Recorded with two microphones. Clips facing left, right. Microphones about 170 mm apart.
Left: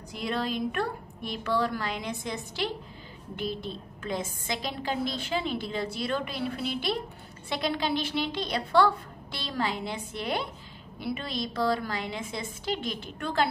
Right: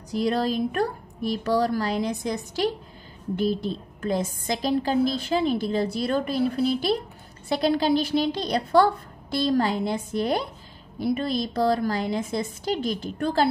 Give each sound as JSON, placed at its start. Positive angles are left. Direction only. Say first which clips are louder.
{"t": 0.1, "sound": "a woman's voice", "louder": "right 7 dB", "side_deg": -40}